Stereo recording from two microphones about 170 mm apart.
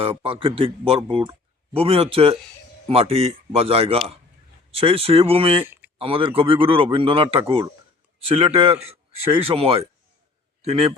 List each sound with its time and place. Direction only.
0.0 s speech: 30° right (ahead or behind)
5.6 s a sound: 10° right (ahead or behind)
6.0 s speech: 30° right (ahead or behind)